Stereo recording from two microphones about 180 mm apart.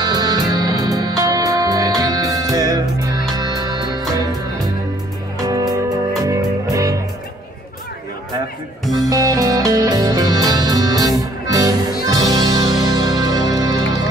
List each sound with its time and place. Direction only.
0.0 s music: 20° right (ahead or behind)
5.5 s music: 20° right (ahead or behind)
9.0 s music: 20° right (ahead or behind)